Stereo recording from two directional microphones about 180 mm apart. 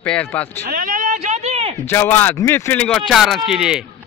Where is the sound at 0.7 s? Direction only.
50° right (ahead or behind).